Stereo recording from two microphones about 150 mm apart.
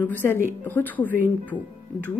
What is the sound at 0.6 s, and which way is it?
Speech, 10° left (ahead or behind).